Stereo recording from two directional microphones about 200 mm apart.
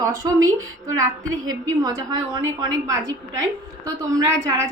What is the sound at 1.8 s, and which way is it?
Speech, 20° right (ahead or behind).